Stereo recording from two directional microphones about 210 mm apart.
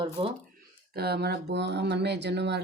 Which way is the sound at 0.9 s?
50° right (ahead or behind).